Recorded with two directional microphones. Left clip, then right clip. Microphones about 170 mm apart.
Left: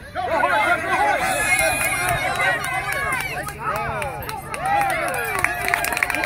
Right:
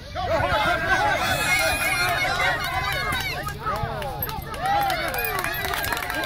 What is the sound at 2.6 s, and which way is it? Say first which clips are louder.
Run: left 2 dB; 30° left (ahead or behind).